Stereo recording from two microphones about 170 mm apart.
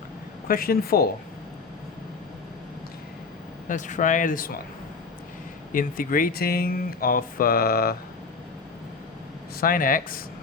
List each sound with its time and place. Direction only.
0.4 s speech: 60° left (ahead or behind)
3.7 s speech: 50° left (ahead or behind)
5.7 s speech: 55° left (ahead or behind)
9.6 s speech: 55° left (ahead or behind)